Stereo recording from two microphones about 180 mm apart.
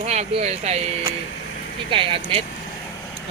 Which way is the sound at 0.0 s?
35° right (ahead or behind).